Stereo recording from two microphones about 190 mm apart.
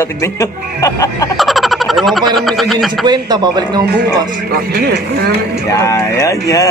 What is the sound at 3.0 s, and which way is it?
Speech, 20° right (ahead or behind).